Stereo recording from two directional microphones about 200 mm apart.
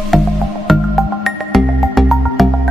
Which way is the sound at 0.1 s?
Centre (ahead or behind).